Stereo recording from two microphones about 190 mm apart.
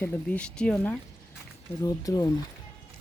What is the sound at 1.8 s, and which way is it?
Speech, 20° left (ahead or behind).